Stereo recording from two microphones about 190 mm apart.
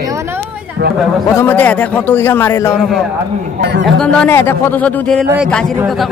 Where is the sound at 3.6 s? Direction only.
60° right (ahead or behind).